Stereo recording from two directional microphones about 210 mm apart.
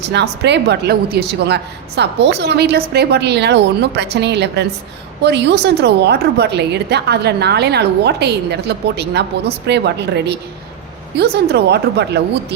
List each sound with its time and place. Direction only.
0.1 s a woman's voice: 55° right (ahead or behind)